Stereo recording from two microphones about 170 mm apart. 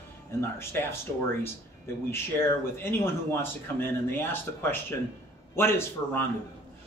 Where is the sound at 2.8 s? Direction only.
15° left (ahead or behind).